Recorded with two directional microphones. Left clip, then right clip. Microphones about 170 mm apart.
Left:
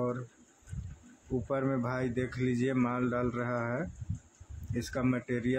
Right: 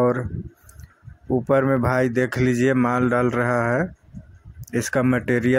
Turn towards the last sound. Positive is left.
turn(degrees=-40)  # may be behind; listen again after turning